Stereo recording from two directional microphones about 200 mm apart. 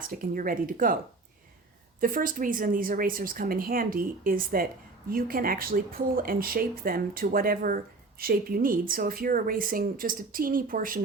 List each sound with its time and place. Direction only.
0.1 s speech: 45° right (ahead or behind)
2.0 s speech: 45° right (ahead or behind)